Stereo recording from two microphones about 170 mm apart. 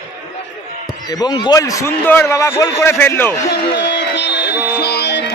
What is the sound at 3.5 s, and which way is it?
Music, 85° left.